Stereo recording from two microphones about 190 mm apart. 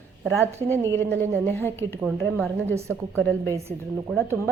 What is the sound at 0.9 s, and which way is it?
Speech, 10° left (ahead or behind).